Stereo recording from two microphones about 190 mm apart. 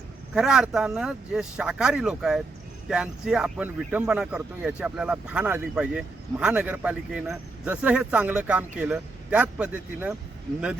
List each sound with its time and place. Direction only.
0.3 s speech: centre (ahead or behind)